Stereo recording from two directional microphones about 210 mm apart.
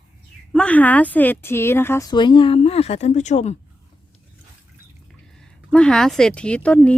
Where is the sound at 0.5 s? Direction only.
5° left (ahead or behind); by 3.6 s 30° left (ahead or behind).